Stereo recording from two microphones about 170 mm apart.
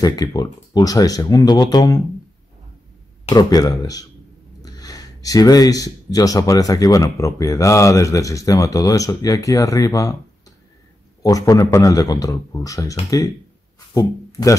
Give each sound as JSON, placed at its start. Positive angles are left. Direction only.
{"t": 0.0, "sound": "speech", "side_deg": 20}
{"t": 3.3, "sound": "speech", "side_deg": 20}
{"t": 11.2, "sound": "speech", "side_deg": 20}
{"t": 13.9, "sound": "speech", "side_deg": 20}